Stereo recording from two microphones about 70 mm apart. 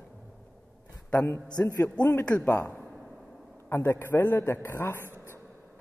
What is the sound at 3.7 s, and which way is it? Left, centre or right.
Speech, left.